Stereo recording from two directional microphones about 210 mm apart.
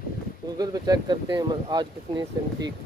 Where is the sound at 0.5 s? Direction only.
15° right (ahead or behind).